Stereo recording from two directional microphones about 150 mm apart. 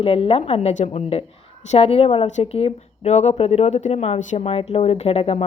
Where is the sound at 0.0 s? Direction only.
40° left (ahead or behind).